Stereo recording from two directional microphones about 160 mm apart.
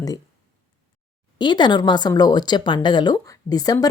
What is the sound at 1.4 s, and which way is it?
A woman's voice, 30° left (ahead or behind).